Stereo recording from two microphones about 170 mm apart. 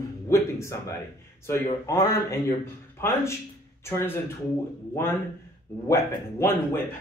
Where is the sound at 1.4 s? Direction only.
15° left (ahead or behind).